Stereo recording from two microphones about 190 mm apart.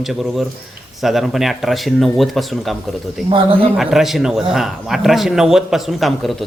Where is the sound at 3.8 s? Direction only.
Centre (ahead or behind).